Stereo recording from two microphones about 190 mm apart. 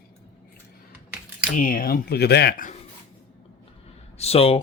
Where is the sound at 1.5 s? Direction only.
45° left (ahead or behind).